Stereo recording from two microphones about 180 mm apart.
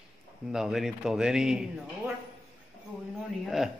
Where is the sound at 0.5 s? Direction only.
Centre (ahead or behind).